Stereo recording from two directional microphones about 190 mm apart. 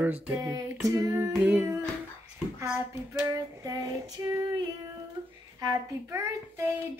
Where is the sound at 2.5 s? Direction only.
15° right (ahead or behind).